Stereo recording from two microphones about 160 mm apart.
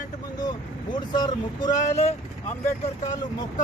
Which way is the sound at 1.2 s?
25° left (ahead or behind).